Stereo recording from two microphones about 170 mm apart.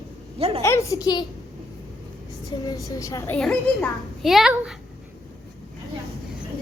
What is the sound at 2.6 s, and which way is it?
Speech, 20° left (ahead or behind).